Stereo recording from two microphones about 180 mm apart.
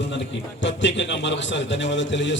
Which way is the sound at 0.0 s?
80° left.